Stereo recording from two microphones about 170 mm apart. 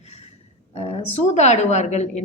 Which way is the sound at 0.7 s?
40° left (ahead or behind).